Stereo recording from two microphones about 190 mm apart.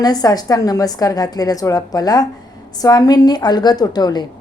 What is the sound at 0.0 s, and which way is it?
Speech, 20° left (ahead or behind).